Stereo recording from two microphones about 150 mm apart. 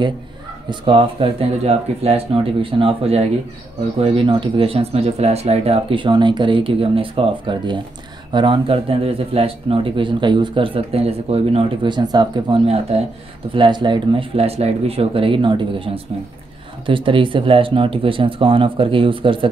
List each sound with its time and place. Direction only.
0.7 s speech: 35° right (ahead or behind)
12.9 s speech: 45° right (ahead or behind)
13.5 s speech: 30° right (ahead or behind)